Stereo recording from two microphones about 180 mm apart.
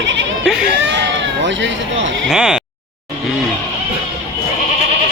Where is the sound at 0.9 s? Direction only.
85° right.